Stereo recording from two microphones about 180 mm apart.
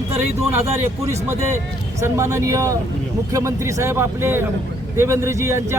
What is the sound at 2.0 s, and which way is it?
A man's voice, 15° right (ahead or behind).